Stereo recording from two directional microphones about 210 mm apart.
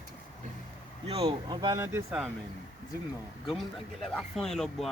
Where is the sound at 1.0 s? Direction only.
30° right (ahead or behind); by 2.3 s 10° right (ahead or behind).